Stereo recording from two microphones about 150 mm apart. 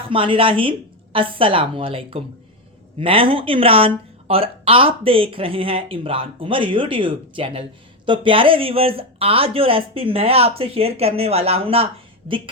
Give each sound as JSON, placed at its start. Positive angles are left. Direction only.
{"t": 0.1, "sound": "speech", "side_deg": -35}